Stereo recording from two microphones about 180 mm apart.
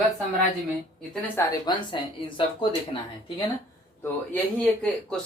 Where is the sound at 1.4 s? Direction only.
25° left (ahead or behind).